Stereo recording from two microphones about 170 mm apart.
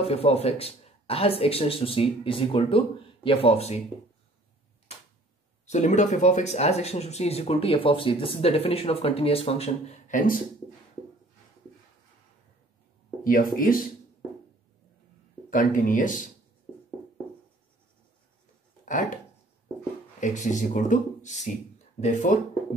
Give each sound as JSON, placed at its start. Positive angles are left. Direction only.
{"t": 0.0, "sound": "speech", "side_deg": 35}
{"t": 5.7, "sound": "speech", "side_deg": 45}
{"t": 13.2, "sound": "speech", "side_deg": 55}
{"t": 15.5, "sound": "speech", "side_deg": 55}
{"t": 18.9, "sound": "speech", "side_deg": 50}
{"t": 20.2, "sound": "speech", "side_deg": 45}